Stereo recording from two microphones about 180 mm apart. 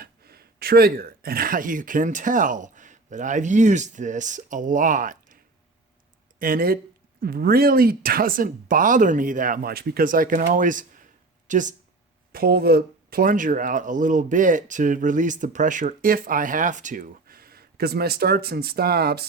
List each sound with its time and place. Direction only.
0.0 s speech: 60° right (ahead or behind)
6.4 s speech: 55° right (ahead or behind)
12.3 s speech: 55° right (ahead or behind)